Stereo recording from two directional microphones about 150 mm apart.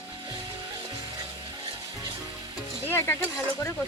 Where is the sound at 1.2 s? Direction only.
25° right (ahead or behind).